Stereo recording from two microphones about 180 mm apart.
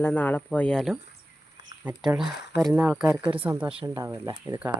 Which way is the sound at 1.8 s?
10° right (ahead or behind).